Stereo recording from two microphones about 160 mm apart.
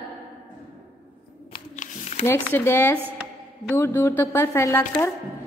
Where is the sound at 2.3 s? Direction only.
15° left (ahead or behind).